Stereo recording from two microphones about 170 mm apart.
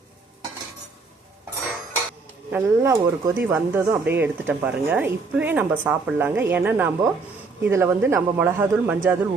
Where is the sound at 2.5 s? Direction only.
15° right (ahead or behind).